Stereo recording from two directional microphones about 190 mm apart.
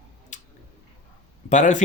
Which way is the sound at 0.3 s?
40° left (ahead or behind).